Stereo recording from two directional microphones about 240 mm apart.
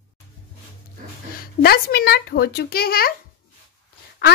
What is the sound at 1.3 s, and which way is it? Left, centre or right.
Speech, left.